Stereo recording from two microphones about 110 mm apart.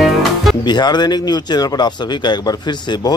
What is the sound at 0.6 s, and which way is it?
Speech, 40° left (ahead or behind).